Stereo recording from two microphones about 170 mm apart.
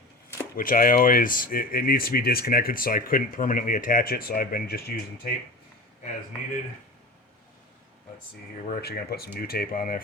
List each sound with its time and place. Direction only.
0.5 s speech: 55° left (ahead or behind)
8.6 s speech: 65° left (ahead or behind)